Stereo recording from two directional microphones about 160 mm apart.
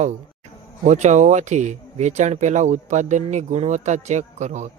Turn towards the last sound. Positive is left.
turn(degrees=-45)  # may be behind; listen again after turning